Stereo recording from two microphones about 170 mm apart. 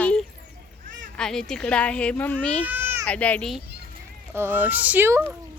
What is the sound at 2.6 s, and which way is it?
Baby cry, 10° right (ahead or behind).